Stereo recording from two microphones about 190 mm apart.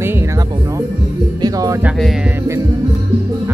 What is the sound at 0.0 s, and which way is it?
Music, 15° right (ahead or behind).